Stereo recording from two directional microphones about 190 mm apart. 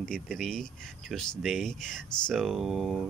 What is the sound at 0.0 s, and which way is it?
Speech, centre (ahead or behind).